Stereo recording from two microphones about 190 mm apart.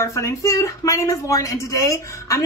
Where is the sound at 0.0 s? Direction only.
15° left (ahead or behind).